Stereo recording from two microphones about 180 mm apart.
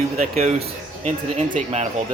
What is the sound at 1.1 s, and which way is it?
Speech, 40° right (ahead or behind).